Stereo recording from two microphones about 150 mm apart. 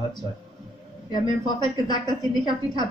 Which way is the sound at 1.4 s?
30° left (ahead or behind).